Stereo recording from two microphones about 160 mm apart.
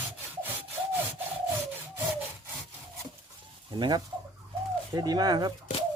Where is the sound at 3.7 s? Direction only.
30° right (ahead or behind).